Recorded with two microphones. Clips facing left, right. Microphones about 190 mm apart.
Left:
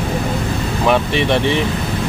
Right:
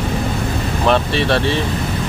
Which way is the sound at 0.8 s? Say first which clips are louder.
Left 1 dB; 15° left (ahead or behind).